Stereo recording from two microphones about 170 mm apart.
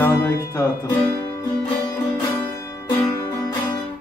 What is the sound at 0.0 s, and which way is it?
Music, 15° left (ahead or behind).